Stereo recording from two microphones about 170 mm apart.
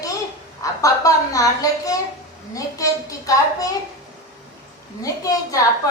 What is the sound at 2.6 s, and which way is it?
A woman's voice, 20° left (ahead or behind).